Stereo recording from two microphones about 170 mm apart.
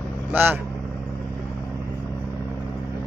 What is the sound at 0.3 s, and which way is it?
Speech, 10° right (ahead or behind).